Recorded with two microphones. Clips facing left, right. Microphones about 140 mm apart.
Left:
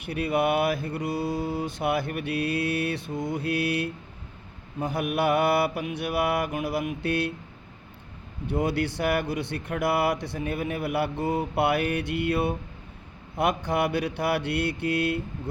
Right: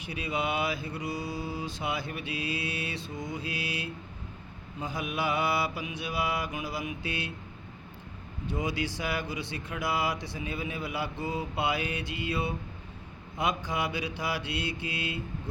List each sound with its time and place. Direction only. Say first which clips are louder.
0.0 s speech: left 7 dB; 60° left (ahead or behind)
8.4 s speech: left 6 dB; 65° left (ahead or behind)